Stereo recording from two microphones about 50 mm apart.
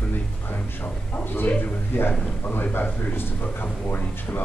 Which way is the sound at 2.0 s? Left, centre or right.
Left.